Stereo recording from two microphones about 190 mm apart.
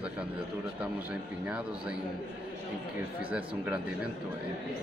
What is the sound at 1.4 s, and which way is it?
Speech, 5° right (ahead or behind).